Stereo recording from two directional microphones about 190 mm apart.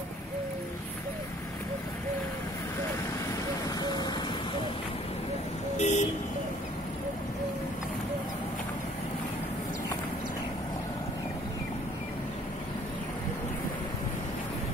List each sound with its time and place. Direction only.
3.6 s vehicle: 20° left (ahead or behind)
5.8 s vehicle: 40° left (ahead or behind)